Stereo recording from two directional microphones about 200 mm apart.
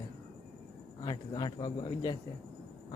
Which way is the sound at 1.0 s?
20° left (ahead or behind).